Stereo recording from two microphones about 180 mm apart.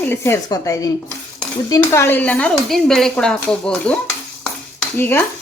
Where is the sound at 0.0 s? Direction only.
15° left (ahead or behind).